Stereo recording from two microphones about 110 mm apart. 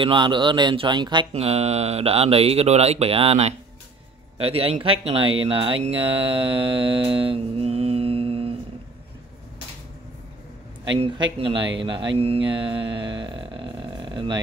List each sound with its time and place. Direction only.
0.0 s speech: 45° right (ahead or behind)
1.3 s speech: 70° right (ahead or behind)
11.3 s speech: 50° right (ahead or behind)
12.2 s mantra: 60° right (ahead or behind)